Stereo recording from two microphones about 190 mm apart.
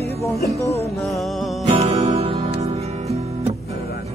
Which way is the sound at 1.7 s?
35° right (ahead or behind).